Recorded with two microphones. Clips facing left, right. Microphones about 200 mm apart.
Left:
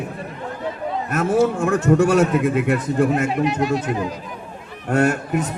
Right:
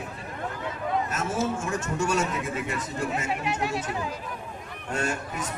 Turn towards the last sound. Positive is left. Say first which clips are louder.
# left 11 dB
turn(degrees=60)  # may be behind; listen again after turning